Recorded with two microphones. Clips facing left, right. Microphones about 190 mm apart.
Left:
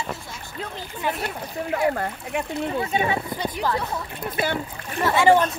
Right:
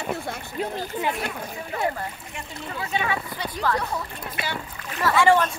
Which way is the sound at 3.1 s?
20° left (ahead or behind).